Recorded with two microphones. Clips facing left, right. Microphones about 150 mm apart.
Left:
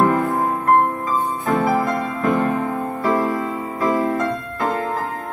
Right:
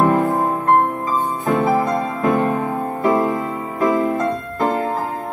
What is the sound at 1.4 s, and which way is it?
Music, 20° right (ahead or behind).